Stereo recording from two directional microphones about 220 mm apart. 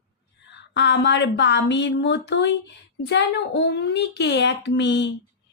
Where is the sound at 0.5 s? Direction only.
50° left (ahead or behind).